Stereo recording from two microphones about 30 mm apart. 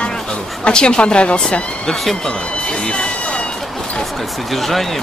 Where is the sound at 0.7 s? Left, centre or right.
Left.